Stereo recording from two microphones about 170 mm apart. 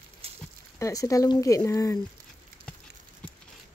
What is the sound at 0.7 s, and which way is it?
Speech, 20° left (ahead or behind).